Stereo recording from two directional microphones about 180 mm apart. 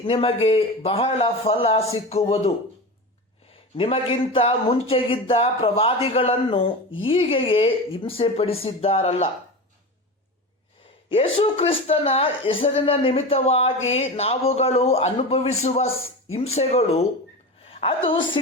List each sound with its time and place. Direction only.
0.0 s speech: 30° left (ahead or behind)
3.8 s speech: 30° left (ahead or behind)
11.1 s a woman's voice: 30° left (ahead or behind)